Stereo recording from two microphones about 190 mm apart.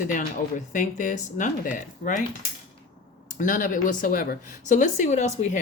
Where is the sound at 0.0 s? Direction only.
45° left (ahead or behind).